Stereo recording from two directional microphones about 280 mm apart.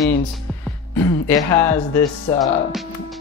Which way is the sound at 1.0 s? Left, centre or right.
Centre.